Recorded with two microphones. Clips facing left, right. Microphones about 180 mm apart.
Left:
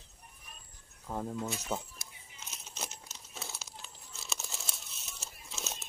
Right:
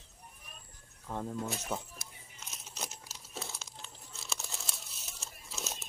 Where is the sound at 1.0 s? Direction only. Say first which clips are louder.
Left 1 dB; 5° left (ahead or behind).